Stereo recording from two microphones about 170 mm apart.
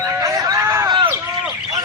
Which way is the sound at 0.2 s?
20° right (ahead or behind).